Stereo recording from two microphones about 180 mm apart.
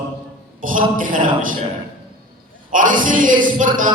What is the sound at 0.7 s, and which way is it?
Speech, 50° right (ahead or behind).